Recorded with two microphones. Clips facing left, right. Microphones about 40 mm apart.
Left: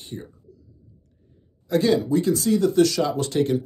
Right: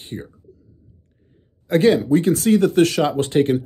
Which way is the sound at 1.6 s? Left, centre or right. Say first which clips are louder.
Right 5 dB; right.